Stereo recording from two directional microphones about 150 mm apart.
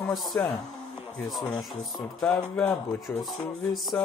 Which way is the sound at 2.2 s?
5° left (ahead or behind).